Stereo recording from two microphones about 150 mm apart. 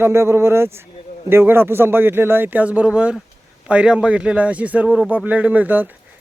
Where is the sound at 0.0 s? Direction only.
15° right (ahead or behind).